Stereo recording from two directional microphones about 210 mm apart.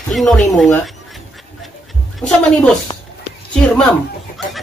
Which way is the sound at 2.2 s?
5° left (ahead or behind).